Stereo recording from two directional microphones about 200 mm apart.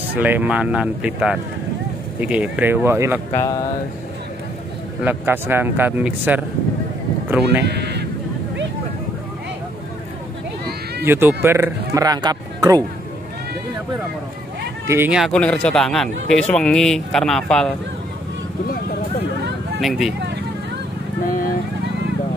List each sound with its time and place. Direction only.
0.2 s speech: 10° right (ahead or behind)
3.3 s speech: 20° left (ahead or behind)
5.0 s speech: 10° right (ahead or behind)
7.7 s a sound: 55° right (ahead or behind)
11.1 s speech: 10° right (ahead or behind)
14.9 s speech: 10° right (ahead or behind)
19.8 s speech: centre (ahead or behind)